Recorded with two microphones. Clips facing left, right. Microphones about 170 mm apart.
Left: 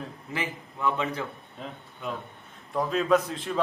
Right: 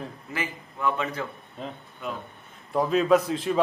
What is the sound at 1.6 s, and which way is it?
A man's voice, centre (ahead or behind).